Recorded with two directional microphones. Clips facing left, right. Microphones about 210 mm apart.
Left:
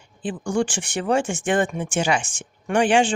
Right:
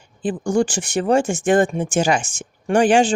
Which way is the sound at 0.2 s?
40° right (ahead or behind).